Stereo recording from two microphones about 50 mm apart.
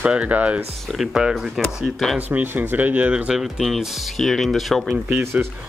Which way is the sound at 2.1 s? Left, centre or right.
Right.